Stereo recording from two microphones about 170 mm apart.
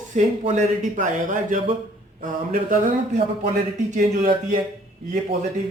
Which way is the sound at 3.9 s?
45° right (ahead or behind).